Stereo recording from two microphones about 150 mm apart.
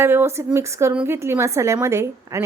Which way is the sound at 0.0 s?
15° right (ahead or behind).